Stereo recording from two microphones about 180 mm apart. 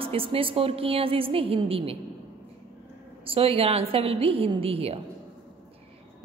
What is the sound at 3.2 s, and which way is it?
A woman's voice, 30° right (ahead or behind).